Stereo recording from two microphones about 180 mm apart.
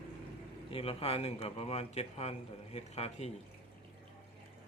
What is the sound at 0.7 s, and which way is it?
A man's voice, 35° left (ahead or behind).